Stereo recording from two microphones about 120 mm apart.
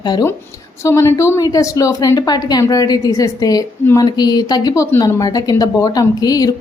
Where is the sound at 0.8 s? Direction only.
25° left (ahead or behind).